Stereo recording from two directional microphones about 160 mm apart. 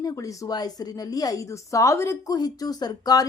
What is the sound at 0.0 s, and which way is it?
A woman's voice, 20° left (ahead or behind).